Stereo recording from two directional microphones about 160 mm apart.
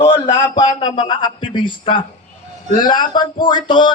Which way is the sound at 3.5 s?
30° left (ahead or behind).